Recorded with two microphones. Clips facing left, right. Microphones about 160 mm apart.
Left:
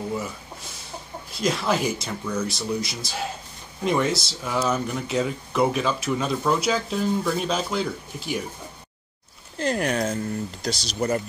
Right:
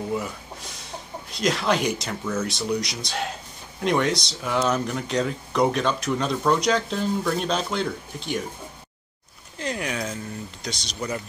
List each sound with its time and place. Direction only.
1.3 s speech: centre (ahead or behind)
9.6 s speech: 40° left (ahead or behind)
10.7 s speech: 5° left (ahead or behind)